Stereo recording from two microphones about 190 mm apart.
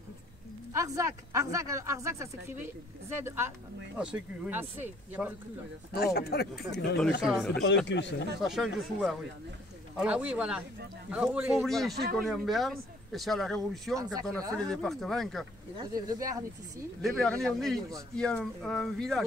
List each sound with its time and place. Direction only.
0.7 s speech: 15° right (ahead or behind)
6.1 s speech: 55° left (ahead or behind)
7.2 s speech: centre (ahead or behind)
7.6 s speech: 65° left (ahead or behind)
8.4 s speech: centre (ahead or behind)
15.7 s speech: 20° right (ahead or behind)
17.0 s speech: 5° left (ahead or behind)